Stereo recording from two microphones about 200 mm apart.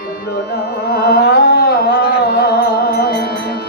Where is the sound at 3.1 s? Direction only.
55° left (ahead or behind).